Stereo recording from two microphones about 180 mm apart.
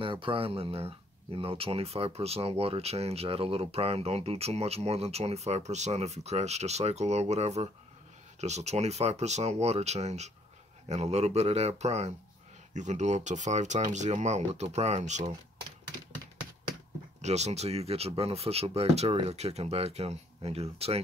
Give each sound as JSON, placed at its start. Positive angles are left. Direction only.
{"t": 0.0, "sound": "speech", "side_deg": -30}
{"t": 17.2, "sound": "speech", "side_deg": -40}